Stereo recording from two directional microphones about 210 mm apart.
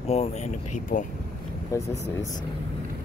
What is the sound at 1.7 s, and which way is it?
Speech, 15° left (ahead or behind).